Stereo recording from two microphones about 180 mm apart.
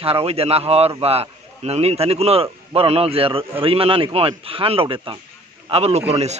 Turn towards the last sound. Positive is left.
turn(degrees=-35)  # may be behind; listen again after turning